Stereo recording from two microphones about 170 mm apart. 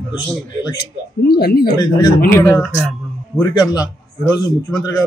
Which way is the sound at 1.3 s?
65° left (ahead or behind).